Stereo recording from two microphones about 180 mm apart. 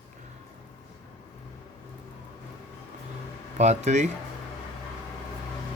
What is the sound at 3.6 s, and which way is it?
Speech, 40° right (ahead or behind).